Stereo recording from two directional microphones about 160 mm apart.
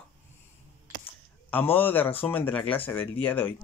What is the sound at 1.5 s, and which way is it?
Speech, 10° left (ahead or behind).